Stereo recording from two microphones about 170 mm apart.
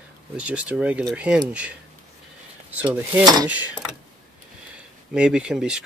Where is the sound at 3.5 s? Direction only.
10° right (ahead or behind).